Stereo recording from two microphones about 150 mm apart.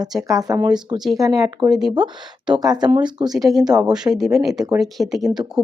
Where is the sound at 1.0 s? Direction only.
Centre (ahead or behind).